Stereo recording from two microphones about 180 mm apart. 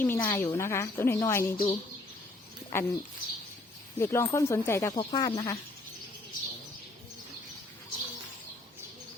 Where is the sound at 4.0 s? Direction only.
15° left (ahead or behind).